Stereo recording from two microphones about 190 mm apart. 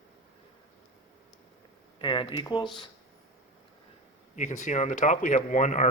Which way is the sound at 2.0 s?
25° left (ahead or behind).